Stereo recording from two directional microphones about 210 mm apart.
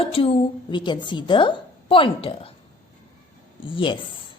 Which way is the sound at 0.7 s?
20° left (ahead or behind).